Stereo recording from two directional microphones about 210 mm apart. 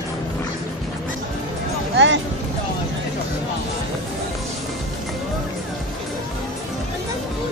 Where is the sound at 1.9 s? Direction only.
60° right (ahead or behind).